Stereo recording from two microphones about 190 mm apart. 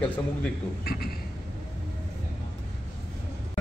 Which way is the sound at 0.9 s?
55° left (ahead or behind).